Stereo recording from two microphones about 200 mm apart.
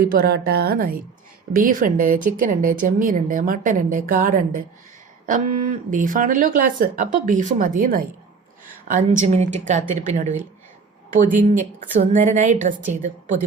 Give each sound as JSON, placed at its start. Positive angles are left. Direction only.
{"t": 0.0, "sound": "speech", "side_deg": -50}